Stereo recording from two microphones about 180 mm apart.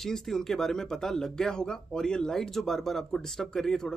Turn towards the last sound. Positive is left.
turn(degrees=5)  # may be behind; listen again after turning